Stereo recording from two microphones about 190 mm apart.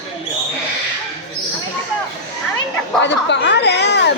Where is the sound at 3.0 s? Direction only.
65° left (ahead or behind).